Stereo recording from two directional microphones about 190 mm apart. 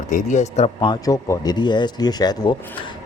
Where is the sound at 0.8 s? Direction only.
20° left (ahead or behind).